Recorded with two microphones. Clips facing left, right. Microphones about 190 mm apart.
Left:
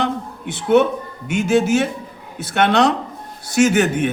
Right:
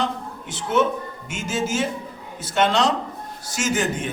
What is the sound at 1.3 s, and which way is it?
A man's voice, 65° left (ahead or behind).